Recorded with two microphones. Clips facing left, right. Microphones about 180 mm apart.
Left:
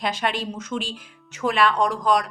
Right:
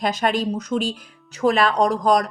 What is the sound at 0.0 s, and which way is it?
A woman's voice, 40° right (ahead or behind).